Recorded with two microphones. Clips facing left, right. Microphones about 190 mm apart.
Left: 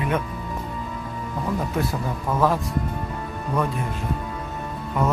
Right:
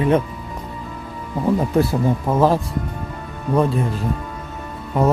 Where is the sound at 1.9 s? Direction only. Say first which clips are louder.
Right 7 dB; 30° right (ahead or behind).